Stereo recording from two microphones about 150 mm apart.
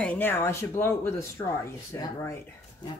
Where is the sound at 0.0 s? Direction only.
10° left (ahead or behind).